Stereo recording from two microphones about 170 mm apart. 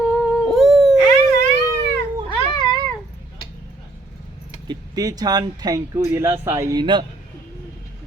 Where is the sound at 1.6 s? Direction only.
15° right (ahead or behind).